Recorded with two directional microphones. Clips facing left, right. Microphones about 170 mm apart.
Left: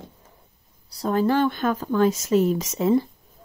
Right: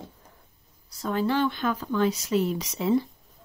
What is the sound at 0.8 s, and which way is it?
Speech, 40° left (ahead or behind).